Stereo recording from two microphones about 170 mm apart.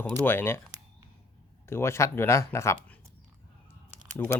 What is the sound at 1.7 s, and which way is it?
Speech, 15° left (ahead or behind).